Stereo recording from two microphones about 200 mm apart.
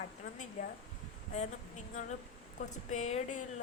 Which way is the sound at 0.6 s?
40° left (ahead or behind).